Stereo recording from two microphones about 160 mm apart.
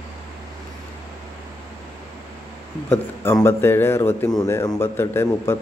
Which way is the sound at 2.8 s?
15° left (ahead or behind).